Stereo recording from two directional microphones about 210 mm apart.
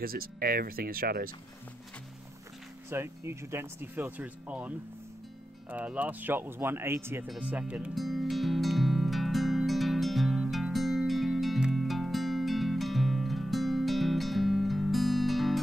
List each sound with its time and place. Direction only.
0.0 s speech: 45° right (ahead or behind)
2.9 s speech: 10° right (ahead or behind)
7.2 s music: 5° right (ahead or behind)